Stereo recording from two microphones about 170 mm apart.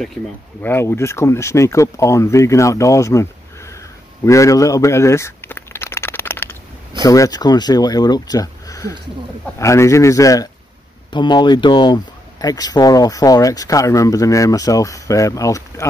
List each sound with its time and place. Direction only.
0.0 s speech: centre (ahead or behind)
0.7 s a man's voice: 15° left (ahead or behind)